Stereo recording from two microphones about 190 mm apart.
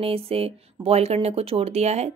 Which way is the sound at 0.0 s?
30° right (ahead or behind).